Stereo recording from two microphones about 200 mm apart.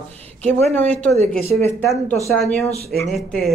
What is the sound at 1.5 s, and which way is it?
Speech, 10° left (ahead or behind).